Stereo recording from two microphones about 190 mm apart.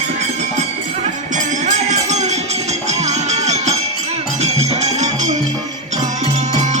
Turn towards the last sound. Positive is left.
turn(degrees=-40)  # may be behind; listen again after turning